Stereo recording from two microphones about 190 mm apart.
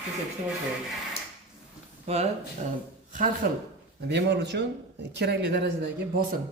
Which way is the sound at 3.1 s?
45° right (ahead or behind).